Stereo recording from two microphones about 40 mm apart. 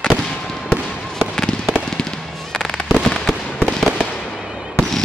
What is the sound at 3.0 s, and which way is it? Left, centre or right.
Fireworks, centre.